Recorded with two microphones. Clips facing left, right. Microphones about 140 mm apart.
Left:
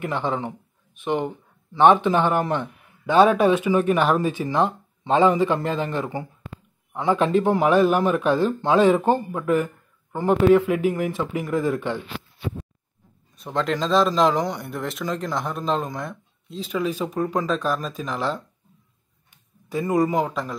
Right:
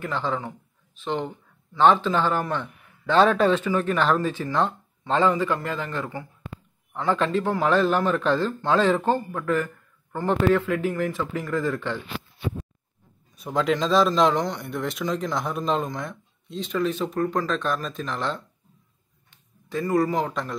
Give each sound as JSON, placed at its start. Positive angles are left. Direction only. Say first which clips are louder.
{"t": 0.0, "sound": "speech", "louder": "left 2 dB", "side_deg": 20}
{"t": 13.4, "sound": "a man's voice", "louder": "right 1 dB", "side_deg": -5}